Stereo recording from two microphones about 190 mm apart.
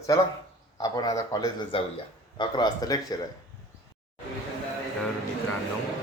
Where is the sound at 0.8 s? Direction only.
20° left (ahead or behind).